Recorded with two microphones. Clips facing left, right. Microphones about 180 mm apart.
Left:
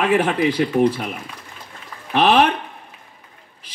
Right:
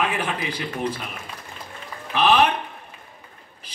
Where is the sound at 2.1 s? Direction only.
70° left (ahead or behind).